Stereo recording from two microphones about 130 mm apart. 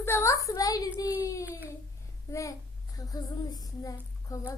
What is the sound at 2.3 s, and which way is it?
A child's voice, 25° left (ahead or behind).